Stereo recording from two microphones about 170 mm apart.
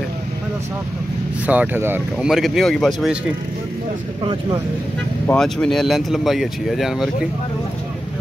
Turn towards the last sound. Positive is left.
turn(degrees=0)  # may be behind; listen again after turning